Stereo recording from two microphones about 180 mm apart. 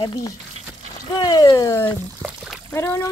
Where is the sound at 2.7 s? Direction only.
15° left (ahead or behind).